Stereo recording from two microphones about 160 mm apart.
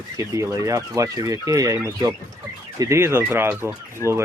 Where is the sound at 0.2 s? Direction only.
20° right (ahead or behind).